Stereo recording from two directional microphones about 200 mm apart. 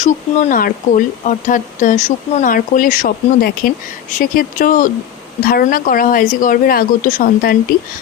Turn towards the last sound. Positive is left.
turn(degrees=45)  # may be behind; listen again after turning